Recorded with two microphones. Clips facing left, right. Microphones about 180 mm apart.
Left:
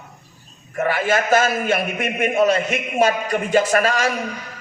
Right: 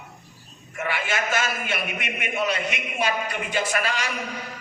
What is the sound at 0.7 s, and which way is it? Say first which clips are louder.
A man's voice: left 8 dB; 40° left (ahead or behind).